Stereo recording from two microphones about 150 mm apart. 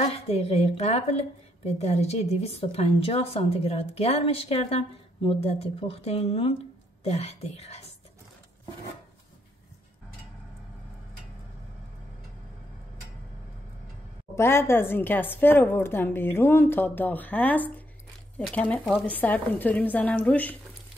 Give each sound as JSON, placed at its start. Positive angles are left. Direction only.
{"t": 0.0, "sound": "a woman's voice", "side_deg": 40}
{"t": 14.3, "sound": "a woman's voice", "side_deg": 15}